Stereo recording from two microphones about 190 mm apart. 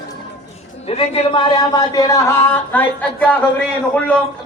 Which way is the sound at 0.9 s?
30° left (ahead or behind).